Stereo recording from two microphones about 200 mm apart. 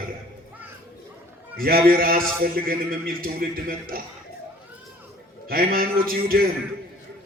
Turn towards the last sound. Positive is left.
turn(degrees=-45)  # may be behind; listen again after turning